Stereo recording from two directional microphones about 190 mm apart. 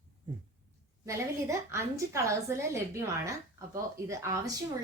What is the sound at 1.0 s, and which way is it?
A woman's voice, 15° right (ahead or behind).